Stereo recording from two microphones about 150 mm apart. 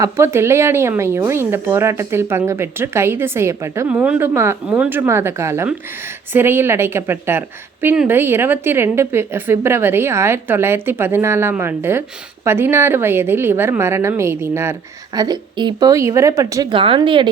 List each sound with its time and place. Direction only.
0.0 s a woman's voice: 15° right (ahead or behind)
16.7 s speech: 35° right (ahead or behind)